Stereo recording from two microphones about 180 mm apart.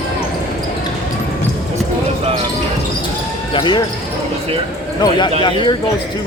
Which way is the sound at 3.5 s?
25° left (ahead or behind).